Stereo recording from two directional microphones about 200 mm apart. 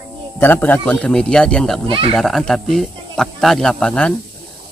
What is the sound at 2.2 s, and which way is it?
Speech, centre (ahead or behind).